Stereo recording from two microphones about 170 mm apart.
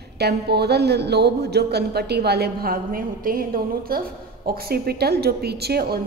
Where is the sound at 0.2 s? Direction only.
75° right (ahead or behind).